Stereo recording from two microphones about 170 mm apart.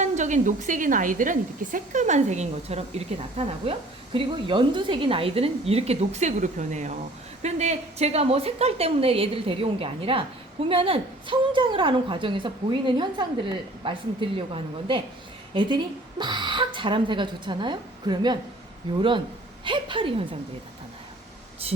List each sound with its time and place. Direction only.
0.0 s a woman's voice: 45° right (ahead or behind)